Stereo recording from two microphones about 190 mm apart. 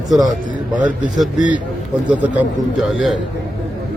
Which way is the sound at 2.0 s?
5° right (ahead or behind).